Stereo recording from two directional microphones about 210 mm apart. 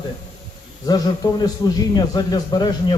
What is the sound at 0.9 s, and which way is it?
Speech, 20° left (ahead or behind).